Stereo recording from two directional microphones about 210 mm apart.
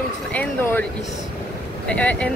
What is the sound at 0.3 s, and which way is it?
Speech, 10° left (ahead or behind).